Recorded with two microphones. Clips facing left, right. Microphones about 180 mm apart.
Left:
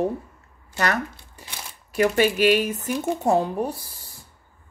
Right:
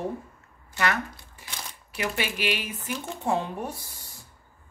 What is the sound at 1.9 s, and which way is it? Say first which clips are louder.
Speech: left 11 dB; 45° left (ahead or behind).